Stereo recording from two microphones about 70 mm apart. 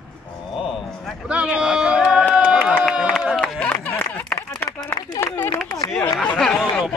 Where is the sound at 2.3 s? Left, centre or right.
Centre.